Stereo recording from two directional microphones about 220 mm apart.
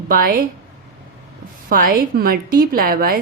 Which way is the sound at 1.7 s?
40° right (ahead or behind).